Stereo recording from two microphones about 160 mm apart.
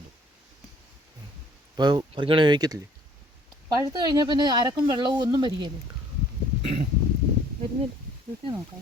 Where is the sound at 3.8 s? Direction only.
25° right (ahead or behind).